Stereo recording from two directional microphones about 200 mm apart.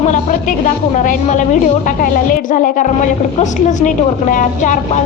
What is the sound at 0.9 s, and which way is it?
A woman's voice, 40° left (ahead or behind).